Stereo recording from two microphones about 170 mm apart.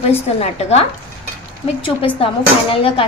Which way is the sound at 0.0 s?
35° left (ahead or behind).